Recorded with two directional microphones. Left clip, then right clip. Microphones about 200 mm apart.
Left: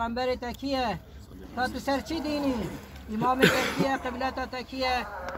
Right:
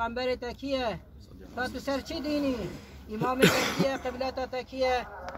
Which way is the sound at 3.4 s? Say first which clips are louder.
Right 1 dB; 60° right (ahead or behind).